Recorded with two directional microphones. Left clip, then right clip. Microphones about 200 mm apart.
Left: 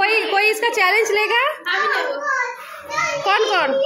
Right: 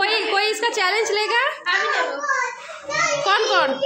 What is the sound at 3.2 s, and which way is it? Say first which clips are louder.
Speech: left 2 dB; 5° left (ahead or behind).